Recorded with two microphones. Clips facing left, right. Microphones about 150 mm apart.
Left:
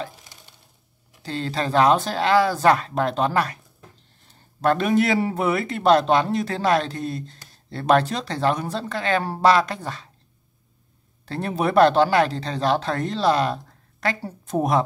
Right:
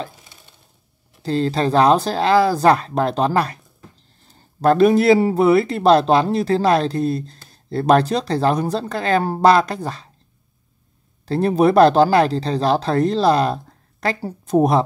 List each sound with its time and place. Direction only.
1.2 s speech: 35° right (ahead or behind)
11.2 s speech: 35° right (ahead or behind)